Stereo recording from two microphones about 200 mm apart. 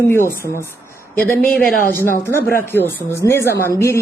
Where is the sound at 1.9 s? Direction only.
10° left (ahead or behind).